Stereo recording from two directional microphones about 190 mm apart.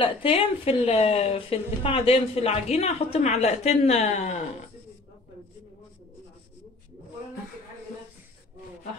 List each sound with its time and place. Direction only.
0.0 s a woman's voice: 30° left (ahead or behind)